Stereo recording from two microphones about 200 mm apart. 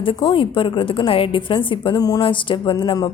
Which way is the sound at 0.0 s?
25° left (ahead or behind).